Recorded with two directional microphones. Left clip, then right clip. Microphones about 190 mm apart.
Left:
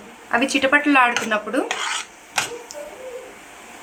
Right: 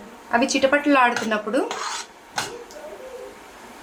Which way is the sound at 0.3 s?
10° right (ahead or behind).